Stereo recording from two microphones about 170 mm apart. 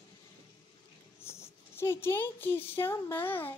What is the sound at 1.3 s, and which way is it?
Speech, 15° left (ahead or behind).